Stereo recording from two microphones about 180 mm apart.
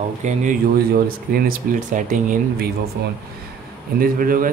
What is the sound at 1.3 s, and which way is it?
Speech, 50° right (ahead or behind).